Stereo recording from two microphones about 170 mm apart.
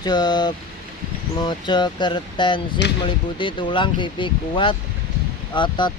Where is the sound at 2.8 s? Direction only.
90° left.